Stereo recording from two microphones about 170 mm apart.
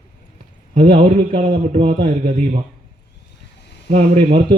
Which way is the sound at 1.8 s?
30° right (ahead or behind).